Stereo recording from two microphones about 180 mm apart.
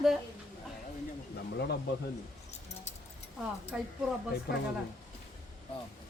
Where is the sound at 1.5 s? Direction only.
65° left (ahead or behind).